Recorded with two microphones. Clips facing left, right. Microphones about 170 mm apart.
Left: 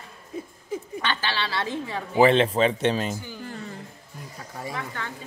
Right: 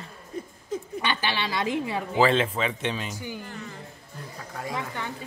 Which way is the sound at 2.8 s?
40° left (ahead or behind).